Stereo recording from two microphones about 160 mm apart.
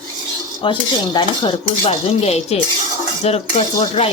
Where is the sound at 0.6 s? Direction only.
30° left (ahead or behind).